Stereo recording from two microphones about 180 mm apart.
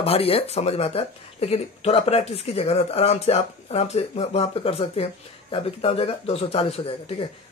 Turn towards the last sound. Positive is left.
turn(degrees=30)  # may be behind; listen again after turning